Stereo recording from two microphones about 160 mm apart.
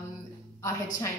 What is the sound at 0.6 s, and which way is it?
Speech, 20° left (ahead or behind).